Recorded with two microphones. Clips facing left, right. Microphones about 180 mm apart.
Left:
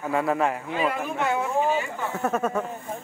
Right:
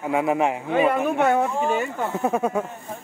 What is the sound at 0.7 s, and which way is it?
Speech, 60° right (ahead or behind).